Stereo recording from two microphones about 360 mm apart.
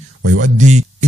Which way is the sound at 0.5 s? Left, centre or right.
Centre.